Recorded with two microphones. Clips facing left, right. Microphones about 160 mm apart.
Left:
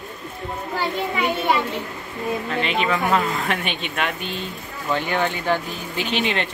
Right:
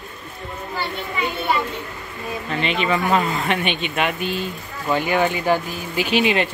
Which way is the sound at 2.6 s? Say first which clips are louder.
Right 3 dB; centre (ahead or behind).